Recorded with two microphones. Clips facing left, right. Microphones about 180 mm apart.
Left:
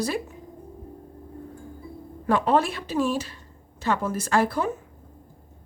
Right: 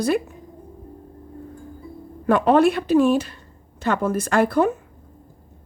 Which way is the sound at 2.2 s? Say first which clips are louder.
Right 6 dB; 60° right (ahead or behind).